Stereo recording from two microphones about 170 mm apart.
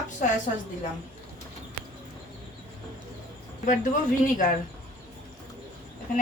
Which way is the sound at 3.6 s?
50° left (ahead or behind).